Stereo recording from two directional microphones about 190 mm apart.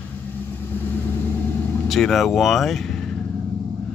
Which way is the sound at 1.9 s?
Centre (ahead or behind).